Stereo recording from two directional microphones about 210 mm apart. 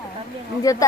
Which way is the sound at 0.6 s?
15° left (ahead or behind).